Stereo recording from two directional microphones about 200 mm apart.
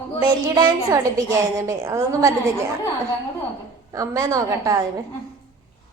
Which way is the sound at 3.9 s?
15° right (ahead or behind).